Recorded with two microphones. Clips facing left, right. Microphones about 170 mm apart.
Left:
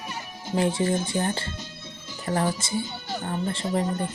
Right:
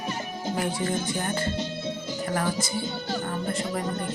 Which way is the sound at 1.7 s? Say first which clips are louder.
Right 11 dB; 75° right (ahead or behind).